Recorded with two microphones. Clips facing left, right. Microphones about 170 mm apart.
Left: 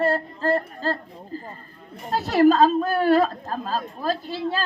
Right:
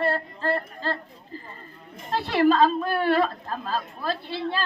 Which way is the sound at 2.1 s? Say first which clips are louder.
Left 3 dB; 45° left (ahead or behind).